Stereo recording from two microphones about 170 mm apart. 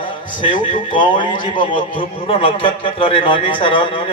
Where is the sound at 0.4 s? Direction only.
30° left (ahead or behind).